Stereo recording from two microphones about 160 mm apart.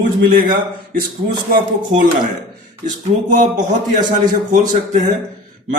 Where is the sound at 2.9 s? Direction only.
50° right (ahead or behind).